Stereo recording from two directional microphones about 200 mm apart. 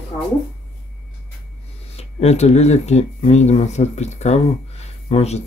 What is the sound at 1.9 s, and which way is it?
Speech, 30° left (ahead or behind).